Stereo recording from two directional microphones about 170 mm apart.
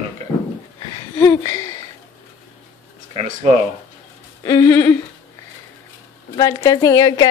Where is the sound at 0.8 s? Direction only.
20° left (ahead or behind).